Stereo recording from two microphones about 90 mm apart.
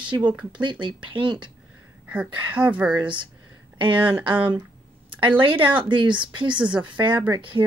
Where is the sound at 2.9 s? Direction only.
60° right (ahead or behind).